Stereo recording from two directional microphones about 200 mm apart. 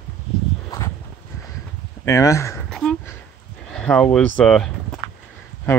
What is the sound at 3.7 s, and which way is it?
Speech, 5° left (ahead or behind).